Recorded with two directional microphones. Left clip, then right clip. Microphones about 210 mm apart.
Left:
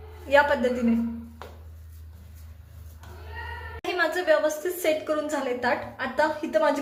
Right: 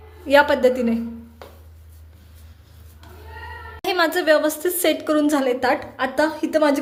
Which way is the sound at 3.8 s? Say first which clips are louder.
Right 6 dB; 50° right (ahead or behind).